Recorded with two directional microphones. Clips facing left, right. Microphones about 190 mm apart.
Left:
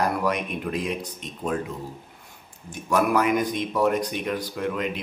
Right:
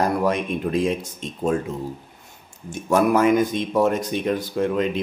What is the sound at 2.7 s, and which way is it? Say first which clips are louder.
Speech: right 4 dB; 25° right (ahead or behind).